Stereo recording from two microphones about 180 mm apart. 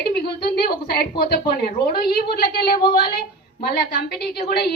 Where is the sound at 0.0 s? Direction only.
65° left (ahead or behind).